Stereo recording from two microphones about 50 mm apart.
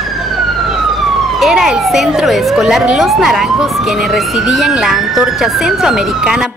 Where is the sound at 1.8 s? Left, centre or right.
Centre.